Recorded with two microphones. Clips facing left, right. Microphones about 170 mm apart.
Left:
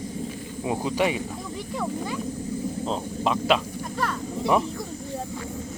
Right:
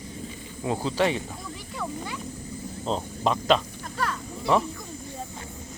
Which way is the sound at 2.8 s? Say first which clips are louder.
Right 3 dB; centre (ahead or behind).